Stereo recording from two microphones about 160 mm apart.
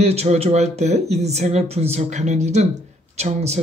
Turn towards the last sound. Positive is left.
turn(degrees=-45)  # may be behind; listen again after turning